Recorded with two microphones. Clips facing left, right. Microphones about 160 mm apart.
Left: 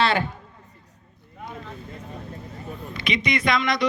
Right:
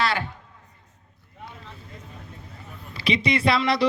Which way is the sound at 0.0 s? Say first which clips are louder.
Left 3 dB; 25° left (ahead or behind).